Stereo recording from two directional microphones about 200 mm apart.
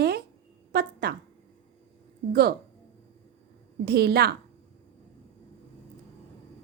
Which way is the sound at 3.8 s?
55° right (ahead or behind).